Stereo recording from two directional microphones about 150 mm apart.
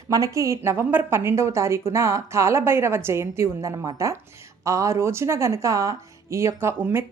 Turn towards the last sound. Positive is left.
turn(degrees=-15)  # may be behind; listen again after turning